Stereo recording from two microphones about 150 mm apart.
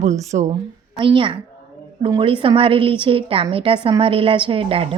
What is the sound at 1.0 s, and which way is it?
A woman's voice, 35° right (ahead or behind).